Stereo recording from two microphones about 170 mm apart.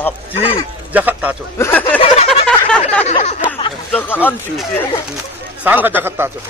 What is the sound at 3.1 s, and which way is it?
Speech, 40° left (ahead or behind).